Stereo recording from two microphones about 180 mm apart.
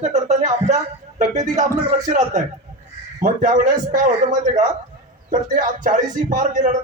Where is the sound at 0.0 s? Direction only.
40° right (ahead or behind).